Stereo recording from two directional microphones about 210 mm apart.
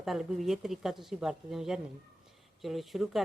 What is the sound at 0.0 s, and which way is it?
A woman's voice, centre (ahead or behind).